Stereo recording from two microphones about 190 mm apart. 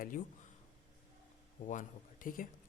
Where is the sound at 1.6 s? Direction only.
45° left (ahead or behind).